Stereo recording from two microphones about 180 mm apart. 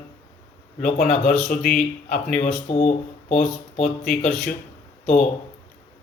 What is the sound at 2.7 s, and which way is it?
Speech, 40° left (ahead or behind).